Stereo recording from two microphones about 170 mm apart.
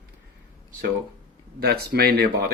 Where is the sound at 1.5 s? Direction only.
65° right (ahead or behind).